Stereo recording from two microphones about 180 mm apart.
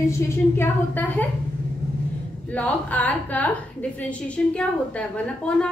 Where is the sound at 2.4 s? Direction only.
10° left (ahead or behind).